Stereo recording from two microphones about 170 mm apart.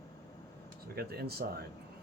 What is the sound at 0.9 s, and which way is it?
Speech, 65° right (ahead or behind).